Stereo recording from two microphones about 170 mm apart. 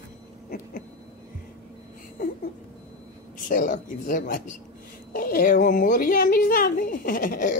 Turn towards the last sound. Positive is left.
turn(degrees=55)  # may be behind; listen again after turning